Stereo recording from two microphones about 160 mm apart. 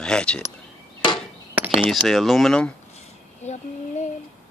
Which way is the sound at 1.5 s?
10° right (ahead or behind).